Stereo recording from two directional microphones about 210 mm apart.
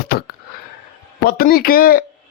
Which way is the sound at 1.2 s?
45° left (ahead or behind).